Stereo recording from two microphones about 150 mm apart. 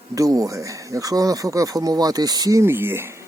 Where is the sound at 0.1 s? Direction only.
25° right (ahead or behind).